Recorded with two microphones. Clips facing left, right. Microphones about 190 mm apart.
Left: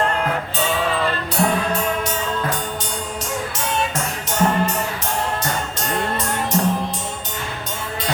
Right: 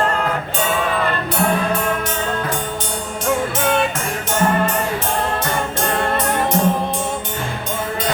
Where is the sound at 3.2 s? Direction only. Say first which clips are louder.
Right 10 dB; 55° right (ahead or behind).